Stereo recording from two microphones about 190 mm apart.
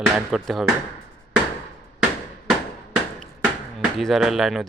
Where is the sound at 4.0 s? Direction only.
Centre (ahead or behind).